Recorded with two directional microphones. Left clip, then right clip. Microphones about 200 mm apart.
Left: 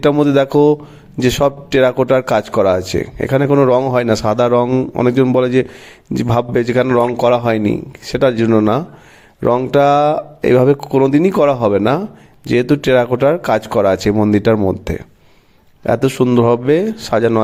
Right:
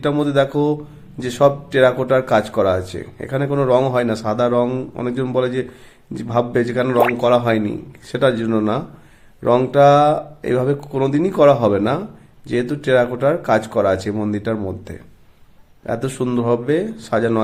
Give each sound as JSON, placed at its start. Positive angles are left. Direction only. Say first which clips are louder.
{"t": 0.0, "sound": "speech", "louder": "left 5 dB", "side_deg": 35}